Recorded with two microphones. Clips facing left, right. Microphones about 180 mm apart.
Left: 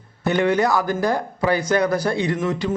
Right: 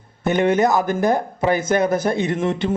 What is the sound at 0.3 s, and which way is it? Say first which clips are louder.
Speech: right 2 dB; 20° right (ahead or behind).